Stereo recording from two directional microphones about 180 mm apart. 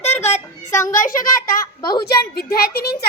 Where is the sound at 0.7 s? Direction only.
15° left (ahead or behind).